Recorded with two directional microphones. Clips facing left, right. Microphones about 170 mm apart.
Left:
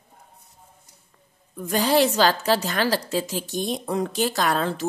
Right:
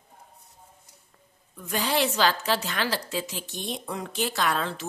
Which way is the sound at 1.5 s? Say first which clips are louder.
Left 7 dB; 40° left (ahead or behind).